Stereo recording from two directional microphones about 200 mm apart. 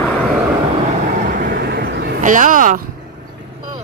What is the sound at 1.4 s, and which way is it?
Vehicle, 50° right (ahead or behind).